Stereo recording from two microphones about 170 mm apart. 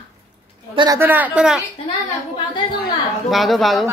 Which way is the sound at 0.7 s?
25° right (ahead or behind).